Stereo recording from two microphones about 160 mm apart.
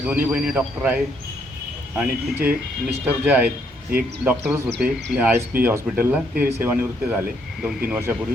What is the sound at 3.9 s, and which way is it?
Speech, 65° right (ahead or behind).